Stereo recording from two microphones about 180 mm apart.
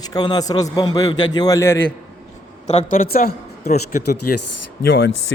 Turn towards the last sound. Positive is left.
turn(degrees=60)  # may be behind; listen again after turning